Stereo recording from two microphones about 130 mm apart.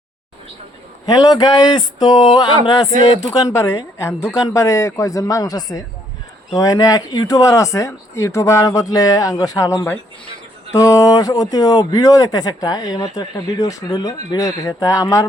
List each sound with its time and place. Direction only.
1.0 s speech: 30° left (ahead or behind)